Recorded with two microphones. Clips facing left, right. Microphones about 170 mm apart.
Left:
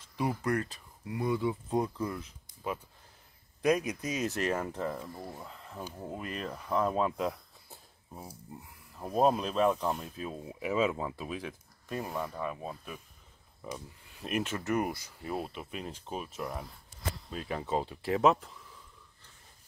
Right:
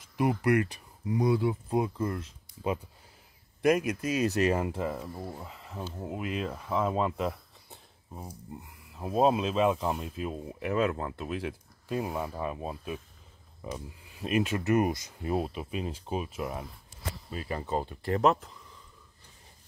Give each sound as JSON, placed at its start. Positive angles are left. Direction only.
{"t": 0.2, "sound": "speech", "side_deg": -5}
{"t": 3.7, "sound": "speech", "side_deg": -5}
{"t": 15.7, "sound": "speech", "side_deg": -10}